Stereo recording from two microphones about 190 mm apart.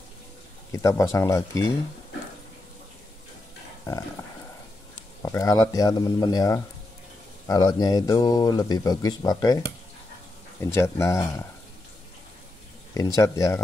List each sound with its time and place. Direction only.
0.7 s speech: 15° left (ahead or behind)
5.2 s speech: 20° left (ahead or behind)
10.6 s speech: 15° left (ahead or behind)
12.9 s speech: 20° left (ahead or behind)